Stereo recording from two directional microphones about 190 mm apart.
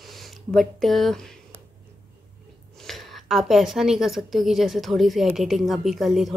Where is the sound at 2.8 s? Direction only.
Centre (ahead or behind).